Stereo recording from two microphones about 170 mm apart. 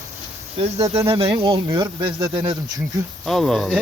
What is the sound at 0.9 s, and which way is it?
Speech, 35° right (ahead or behind).